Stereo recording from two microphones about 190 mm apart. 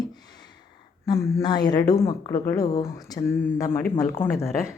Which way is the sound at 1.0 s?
20° left (ahead or behind).